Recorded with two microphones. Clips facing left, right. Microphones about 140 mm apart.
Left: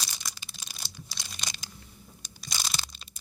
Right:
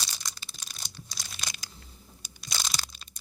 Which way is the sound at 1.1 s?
Centre (ahead or behind).